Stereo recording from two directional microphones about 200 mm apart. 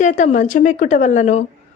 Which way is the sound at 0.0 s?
40° left (ahead or behind).